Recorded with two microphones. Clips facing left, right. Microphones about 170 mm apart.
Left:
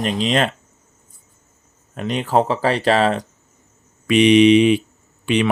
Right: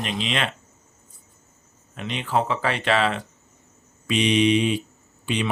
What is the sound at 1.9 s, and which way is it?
Speech, 45° left (ahead or behind).